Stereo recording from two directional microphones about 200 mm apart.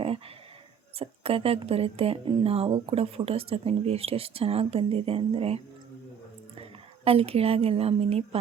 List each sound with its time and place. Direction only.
0.9 s a woman's voice: 30° right (ahead or behind)
6.6 s a woman's voice: 30° right (ahead or behind)